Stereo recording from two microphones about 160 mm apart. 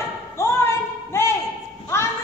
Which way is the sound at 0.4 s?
15° left (ahead or behind).